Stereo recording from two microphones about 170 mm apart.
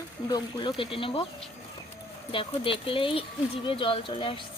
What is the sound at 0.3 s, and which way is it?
Speech, 25° left (ahead or behind).